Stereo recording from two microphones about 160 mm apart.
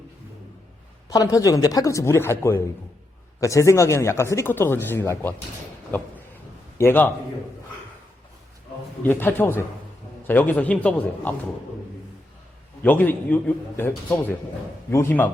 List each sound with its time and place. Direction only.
1.1 s speech: 20° left (ahead or behind)
6.7 s a man's voice: 15° left (ahead or behind)
9.0 s speech: 15° left (ahead or behind)
12.8 s speech: 10° left (ahead or behind)